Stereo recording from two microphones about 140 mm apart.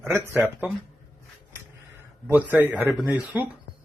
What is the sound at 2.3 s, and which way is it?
Speech, 10° right (ahead or behind).